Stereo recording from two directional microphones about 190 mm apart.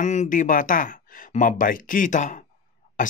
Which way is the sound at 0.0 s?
40° left (ahead or behind).